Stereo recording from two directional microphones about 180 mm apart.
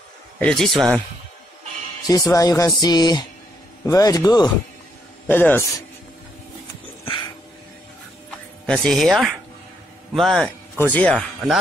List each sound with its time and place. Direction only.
0.4 s speech: 5° left (ahead or behind)
2.0 s speech: 20° left (ahead or behind)
5.3 s speech: 10° left (ahead or behind)
8.6 s speech: 5° left (ahead or behind)